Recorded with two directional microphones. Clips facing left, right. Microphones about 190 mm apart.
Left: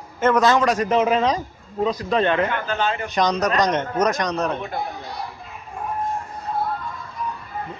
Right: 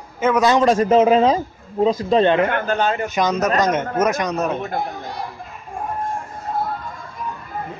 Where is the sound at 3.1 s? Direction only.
5° right (ahead or behind).